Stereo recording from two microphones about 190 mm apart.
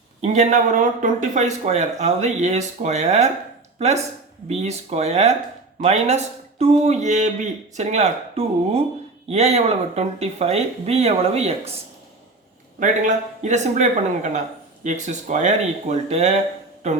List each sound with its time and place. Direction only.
0.2 s speech: 35° right (ahead or behind)
12.8 s speech: 40° right (ahead or behind)